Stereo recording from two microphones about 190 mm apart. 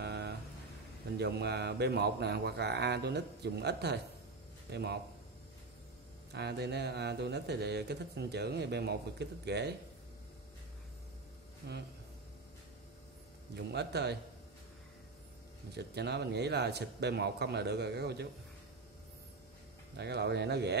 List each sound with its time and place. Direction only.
0.0 s a sound: 60° right (ahead or behind)
1.1 s speech: 60° right (ahead or behind)
6.3 s speech: 60° right (ahead or behind)
13.6 s speech: 60° right (ahead or behind)
15.7 s speech: 60° right (ahead or behind)
20.0 s speech: 60° right (ahead or behind)